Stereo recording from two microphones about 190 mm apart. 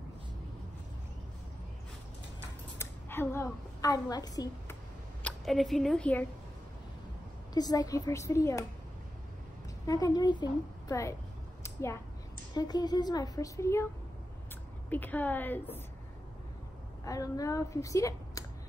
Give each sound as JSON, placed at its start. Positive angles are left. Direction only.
{"t": 2.8, "sound": "scissors", "side_deg": 10}
{"t": 3.8, "sound": "a woman's voice", "side_deg": 20}
{"t": 5.2, "sound": "a woman's voice", "side_deg": 0}
{"t": 7.5, "sound": "a woman's voice", "side_deg": 20}
{"t": 9.8, "sound": "a woman's voice", "side_deg": 20}
{"t": 11.6, "sound": "a sound", "side_deg": 15}
{"t": 12.5, "sound": "a woman's voice", "side_deg": 20}
{"t": 14.9, "sound": "a woman's voice", "side_deg": 10}
{"t": 17.0, "sound": "a woman's voice", "side_deg": 20}